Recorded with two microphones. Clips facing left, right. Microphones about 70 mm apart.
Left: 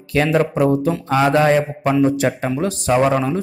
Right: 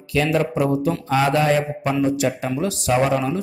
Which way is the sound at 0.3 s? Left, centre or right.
Left.